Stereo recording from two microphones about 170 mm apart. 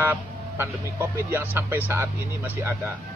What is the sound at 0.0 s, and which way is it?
A man's voice, 15° right (ahead or behind).